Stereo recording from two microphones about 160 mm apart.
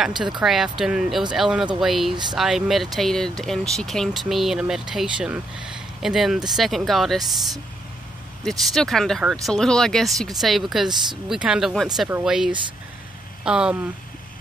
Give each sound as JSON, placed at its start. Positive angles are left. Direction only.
{"t": 0.1, "sound": "speech", "side_deg": -30}
{"t": 0.4, "sound": "speech", "side_deg": 0}
{"t": 8.5, "sound": "speech", "side_deg": 0}